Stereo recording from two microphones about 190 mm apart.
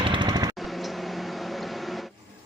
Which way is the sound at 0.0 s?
25° right (ahead or behind).